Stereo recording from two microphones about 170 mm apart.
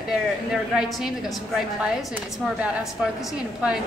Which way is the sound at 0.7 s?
5° right (ahead or behind).